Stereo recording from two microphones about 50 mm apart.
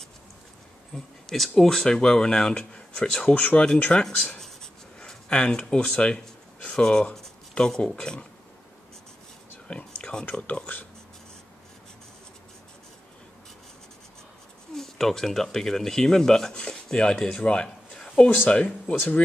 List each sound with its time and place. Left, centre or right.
0.9 s speech: centre
3.3 s speech: left
4.4 s writing: centre
6.7 s speech: centre
9.7 s a sound: left
10.5 s speech: left
14.7 s speech: centre
17.5 s a sound: centre
18.5 s speech: left